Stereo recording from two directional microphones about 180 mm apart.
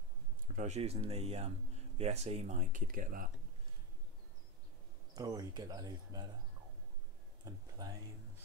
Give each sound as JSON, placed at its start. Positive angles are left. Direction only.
{"t": 0.6, "sound": "speech", "side_deg": -40}
{"t": 5.1, "sound": "speech", "side_deg": -20}
{"t": 7.8, "sound": "speech", "side_deg": -20}